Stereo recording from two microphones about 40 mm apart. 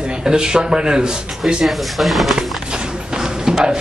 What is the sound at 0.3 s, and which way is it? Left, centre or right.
Speech, centre.